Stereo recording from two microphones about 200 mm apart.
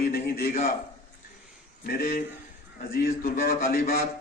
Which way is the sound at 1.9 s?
45° left (ahead or behind).